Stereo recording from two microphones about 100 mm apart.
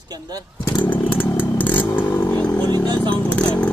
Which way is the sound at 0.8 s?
15° left (ahead or behind).